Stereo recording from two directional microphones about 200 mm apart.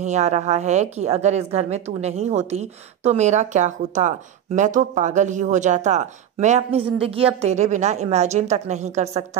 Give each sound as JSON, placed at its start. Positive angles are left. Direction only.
{"t": 0.0, "sound": "speech", "side_deg": -35}